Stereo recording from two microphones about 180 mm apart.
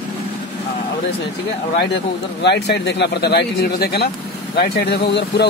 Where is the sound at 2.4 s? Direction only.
70° left (ahead or behind).